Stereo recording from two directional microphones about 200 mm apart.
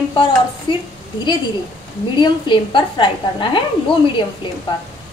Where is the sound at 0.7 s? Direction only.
25° left (ahead or behind).